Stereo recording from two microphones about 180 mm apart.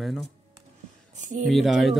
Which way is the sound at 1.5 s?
Centre (ahead or behind).